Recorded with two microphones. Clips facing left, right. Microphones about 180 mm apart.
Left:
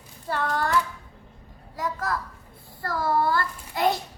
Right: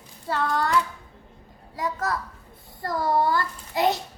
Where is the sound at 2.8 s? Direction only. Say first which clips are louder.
Right 1 dB; 20° right (ahead or behind).